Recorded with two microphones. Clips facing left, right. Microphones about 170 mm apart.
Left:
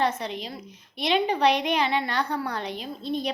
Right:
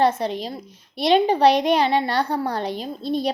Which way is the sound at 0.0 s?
35° right (ahead or behind).